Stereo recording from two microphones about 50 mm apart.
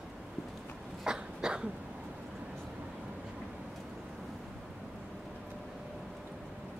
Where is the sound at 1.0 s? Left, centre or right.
Centre.